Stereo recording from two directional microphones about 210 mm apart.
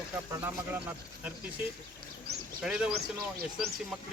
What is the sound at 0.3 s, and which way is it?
Speech, 10° right (ahead or behind).